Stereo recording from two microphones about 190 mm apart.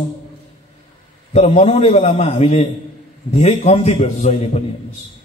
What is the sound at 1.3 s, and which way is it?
A man's voice, 35° left (ahead or behind).